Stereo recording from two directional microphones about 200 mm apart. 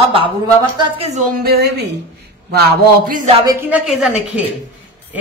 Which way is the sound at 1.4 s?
55° right (ahead or behind).